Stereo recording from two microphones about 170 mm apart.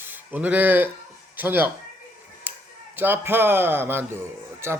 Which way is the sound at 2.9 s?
10° right (ahead or behind).